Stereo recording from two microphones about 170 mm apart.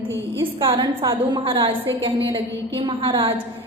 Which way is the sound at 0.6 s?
25° right (ahead or behind).